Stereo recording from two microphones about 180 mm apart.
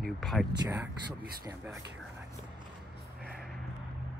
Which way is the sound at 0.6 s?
15° right (ahead or behind).